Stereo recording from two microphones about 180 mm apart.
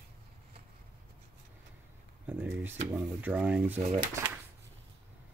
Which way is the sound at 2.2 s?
10° right (ahead or behind).